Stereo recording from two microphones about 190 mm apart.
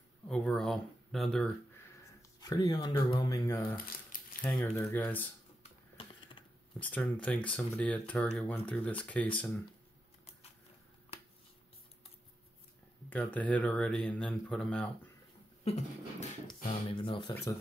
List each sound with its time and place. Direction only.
0.3 s speech: 5° left (ahead or behind)
2.4 s speech: 20° left (ahead or behind)
3.7 s a sound: 50° left (ahead or behind)
4.4 s speech: 10° left (ahead or behind)
5.6 s typing: 25° left (ahead or behind)
6.8 s speech: 10° left (ahead or behind)
13.3 s speech: 5° left (ahead or behind)
15.6 s beatboxing: 35° left (ahead or behind)
16.4 s speech: 25° left (ahead or behind)